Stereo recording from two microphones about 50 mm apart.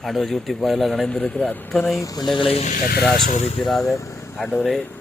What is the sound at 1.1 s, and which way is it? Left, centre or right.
Speech, left.